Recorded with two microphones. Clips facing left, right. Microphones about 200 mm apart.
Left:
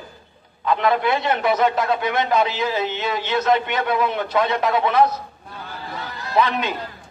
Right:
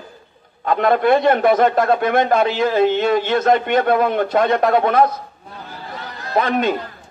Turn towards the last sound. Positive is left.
turn(degrees=-50)  # may be behind; listen again after turning